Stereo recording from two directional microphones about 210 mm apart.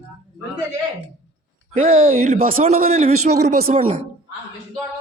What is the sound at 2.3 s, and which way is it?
Speech, 45° right (ahead or behind).